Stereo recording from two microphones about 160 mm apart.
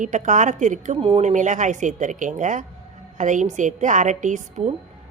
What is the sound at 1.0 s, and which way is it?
A woman's voice, 35° right (ahead or behind).